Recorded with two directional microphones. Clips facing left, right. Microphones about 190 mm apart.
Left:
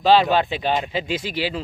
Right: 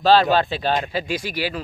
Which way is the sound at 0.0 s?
15° left (ahead or behind).